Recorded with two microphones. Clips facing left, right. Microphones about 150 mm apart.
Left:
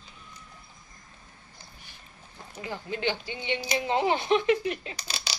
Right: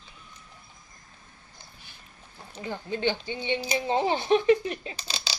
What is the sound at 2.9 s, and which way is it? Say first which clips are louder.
Speech: right 3 dB; 30° right (ahead or behind).